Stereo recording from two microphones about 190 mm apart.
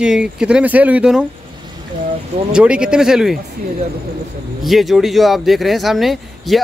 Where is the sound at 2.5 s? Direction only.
5° right (ahead or behind).